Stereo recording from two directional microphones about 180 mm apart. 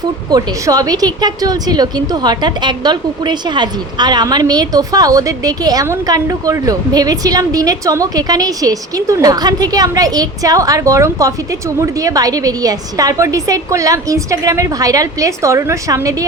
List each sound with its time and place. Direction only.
0.3 s a woman's voice: 20° right (ahead or behind)